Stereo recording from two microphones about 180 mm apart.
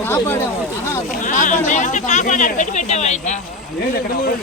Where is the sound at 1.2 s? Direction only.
45° left (ahead or behind).